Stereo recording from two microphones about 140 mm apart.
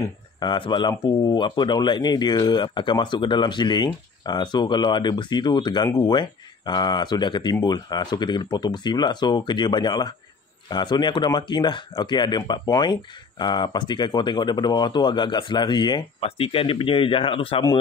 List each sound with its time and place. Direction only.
0.0 s speech: 30° left (ahead or behind)